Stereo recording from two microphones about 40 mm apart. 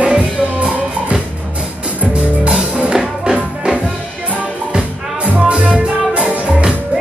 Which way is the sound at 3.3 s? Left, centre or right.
Right.